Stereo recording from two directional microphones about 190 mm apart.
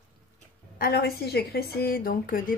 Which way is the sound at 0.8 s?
55° left (ahead or behind).